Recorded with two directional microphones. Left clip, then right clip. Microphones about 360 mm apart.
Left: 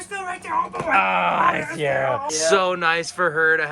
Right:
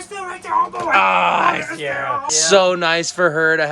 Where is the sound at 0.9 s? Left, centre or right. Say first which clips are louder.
Right 4 dB; centre.